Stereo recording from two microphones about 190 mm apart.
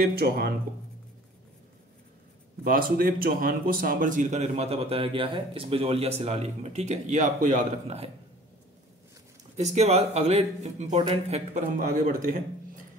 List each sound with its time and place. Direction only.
0.0 s speech: 55° right (ahead or behind)
2.6 s speech: 50° right (ahead or behind)
9.6 s speech: 35° right (ahead or behind)